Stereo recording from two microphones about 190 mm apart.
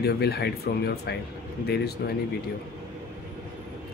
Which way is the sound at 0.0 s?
60° left (ahead or behind).